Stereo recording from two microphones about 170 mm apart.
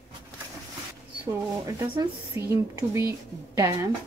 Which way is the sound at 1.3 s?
15° right (ahead or behind).